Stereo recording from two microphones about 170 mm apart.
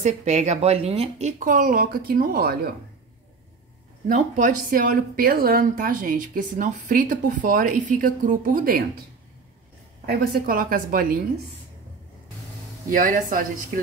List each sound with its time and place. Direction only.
0.0 s speech: 45° right (ahead or behind); by 2.7 s 65° right (ahead or behind)
4.1 s a woman's voice: 50° right (ahead or behind)
10.0 s a woman's voice: 55° right (ahead or behind)
12.9 s speech: 55° right (ahead or behind)